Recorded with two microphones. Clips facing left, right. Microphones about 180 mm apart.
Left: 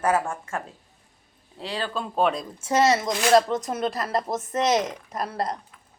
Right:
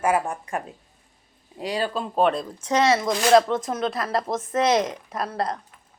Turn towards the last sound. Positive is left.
turn(degrees=0)  # may be behind; listen again after turning